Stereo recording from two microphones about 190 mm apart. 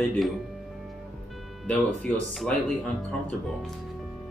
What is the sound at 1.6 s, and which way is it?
Speech, 5° left (ahead or behind).